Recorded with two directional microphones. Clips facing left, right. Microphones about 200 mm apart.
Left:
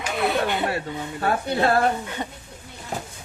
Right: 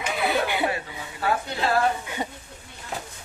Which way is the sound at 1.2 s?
50° left (ahead or behind).